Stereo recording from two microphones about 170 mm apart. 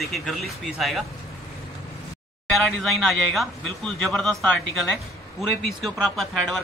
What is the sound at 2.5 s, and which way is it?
Speech, centre (ahead or behind).